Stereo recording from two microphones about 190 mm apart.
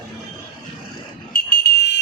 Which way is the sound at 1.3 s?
55° left (ahead or behind).